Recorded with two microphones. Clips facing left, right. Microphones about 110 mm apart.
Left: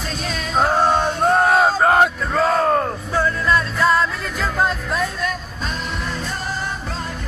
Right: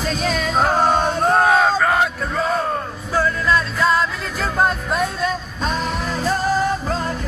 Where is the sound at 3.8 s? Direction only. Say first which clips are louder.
Left 1 dB; 25° right (ahead or behind).